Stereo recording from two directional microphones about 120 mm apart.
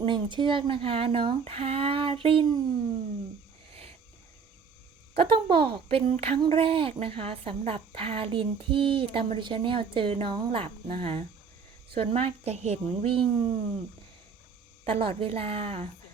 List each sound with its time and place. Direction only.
0.0 s a woman's voice: 40° right (ahead or behind)
5.1 s a woman's voice: 50° right (ahead or behind)
14.8 s speech: 50° right (ahead or behind)